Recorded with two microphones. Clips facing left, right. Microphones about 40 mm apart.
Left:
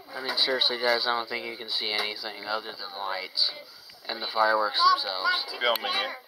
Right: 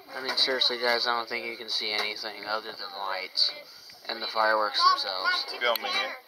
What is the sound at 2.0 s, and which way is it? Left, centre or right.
Speech, centre.